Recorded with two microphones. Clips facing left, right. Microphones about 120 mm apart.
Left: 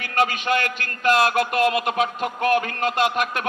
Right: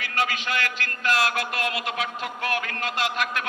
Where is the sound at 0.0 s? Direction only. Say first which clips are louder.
Left 5 dB; 50° left (ahead or behind).